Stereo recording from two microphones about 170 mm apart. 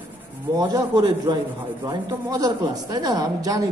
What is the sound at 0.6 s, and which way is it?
A woman's voice, 25° right (ahead or behind).